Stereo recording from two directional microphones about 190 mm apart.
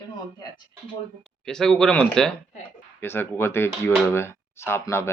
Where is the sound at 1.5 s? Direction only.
5° left (ahead or behind).